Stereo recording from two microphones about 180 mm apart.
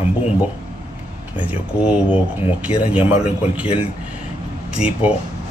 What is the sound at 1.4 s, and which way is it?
Speech, 5° right (ahead or behind).